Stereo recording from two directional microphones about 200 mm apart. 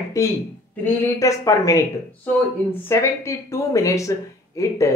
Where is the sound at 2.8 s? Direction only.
15° left (ahead or behind).